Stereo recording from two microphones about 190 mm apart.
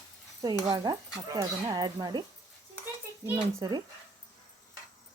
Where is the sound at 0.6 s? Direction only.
25° right (ahead or behind).